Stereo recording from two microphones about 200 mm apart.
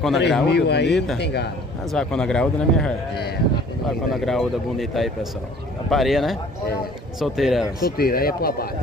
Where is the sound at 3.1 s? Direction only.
55° left (ahead or behind).